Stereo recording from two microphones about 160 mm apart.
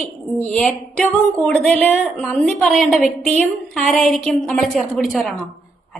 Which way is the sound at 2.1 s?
5° left (ahead or behind).